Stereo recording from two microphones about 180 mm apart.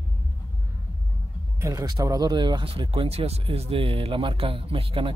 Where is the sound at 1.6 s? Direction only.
20° right (ahead or behind).